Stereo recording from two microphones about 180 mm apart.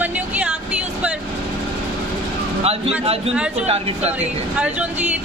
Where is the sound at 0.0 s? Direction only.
5° right (ahead or behind).